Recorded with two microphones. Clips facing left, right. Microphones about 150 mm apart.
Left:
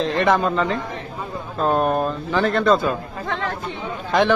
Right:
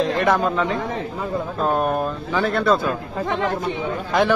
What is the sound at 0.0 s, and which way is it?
Speech, 5° right (ahead or behind).